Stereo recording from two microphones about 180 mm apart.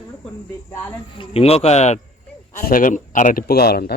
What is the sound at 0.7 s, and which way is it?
Speech, 15° left (ahead or behind).